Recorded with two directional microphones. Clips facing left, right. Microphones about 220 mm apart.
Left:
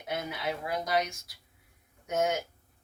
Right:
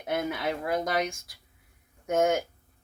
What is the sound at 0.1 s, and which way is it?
Speech, 50° right (ahead or behind).